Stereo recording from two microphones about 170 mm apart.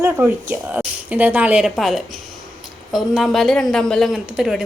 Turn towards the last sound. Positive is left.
turn(degrees=-5)  # may be behind; listen again after turning